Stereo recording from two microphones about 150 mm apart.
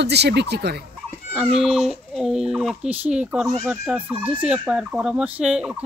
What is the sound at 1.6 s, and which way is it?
Speech, centre (ahead or behind).